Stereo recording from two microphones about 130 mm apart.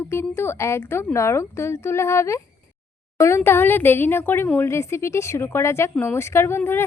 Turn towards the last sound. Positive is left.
turn(degrees=20)  # may be behind; listen again after turning